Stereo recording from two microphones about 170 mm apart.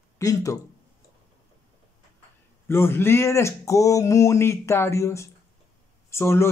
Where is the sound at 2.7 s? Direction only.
15° left (ahead or behind).